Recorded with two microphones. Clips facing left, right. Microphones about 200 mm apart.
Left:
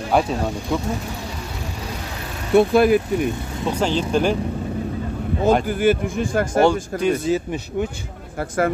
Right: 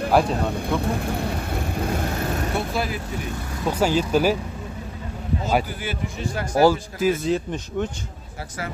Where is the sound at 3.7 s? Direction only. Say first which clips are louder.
Even; 10° right (ahead or behind).